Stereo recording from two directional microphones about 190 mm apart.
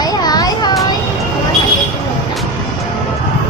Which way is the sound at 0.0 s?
20° left (ahead or behind).